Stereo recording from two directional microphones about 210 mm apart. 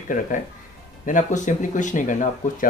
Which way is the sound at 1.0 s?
35° left (ahead or behind).